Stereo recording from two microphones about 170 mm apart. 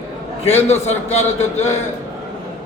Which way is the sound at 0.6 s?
40° left (ahead or behind).